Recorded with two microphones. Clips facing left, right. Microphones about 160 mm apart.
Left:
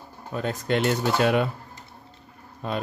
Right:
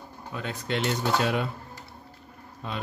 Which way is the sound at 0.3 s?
40° left (ahead or behind).